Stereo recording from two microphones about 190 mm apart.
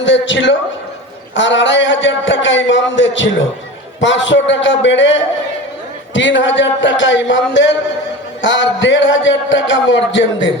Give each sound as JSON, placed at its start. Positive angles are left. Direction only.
{"t": 0.0, "sound": "a man's voice", "side_deg": 75}